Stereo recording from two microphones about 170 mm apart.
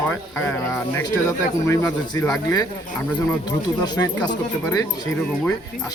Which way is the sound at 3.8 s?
25° left (ahead or behind).